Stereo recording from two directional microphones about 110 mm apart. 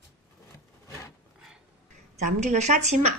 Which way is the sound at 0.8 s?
25° left (ahead or behind).